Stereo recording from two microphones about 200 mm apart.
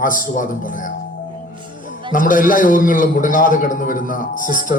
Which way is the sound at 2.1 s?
45° left (ahead or behind).